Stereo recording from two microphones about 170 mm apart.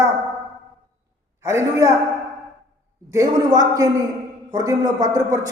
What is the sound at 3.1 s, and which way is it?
A man's voice, 20° right (ahead or behind).